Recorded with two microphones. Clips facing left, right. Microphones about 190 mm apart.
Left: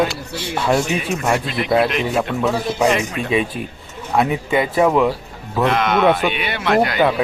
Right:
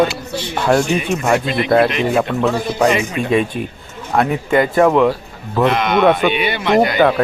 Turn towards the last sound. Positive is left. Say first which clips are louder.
# right 3 dB
turn(degrees=0)  # may be behind; listen again after turning